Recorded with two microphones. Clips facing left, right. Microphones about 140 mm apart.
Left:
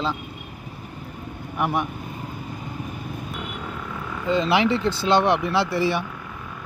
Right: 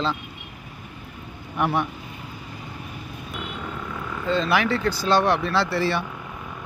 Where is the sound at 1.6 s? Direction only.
10° left (ahead or behind).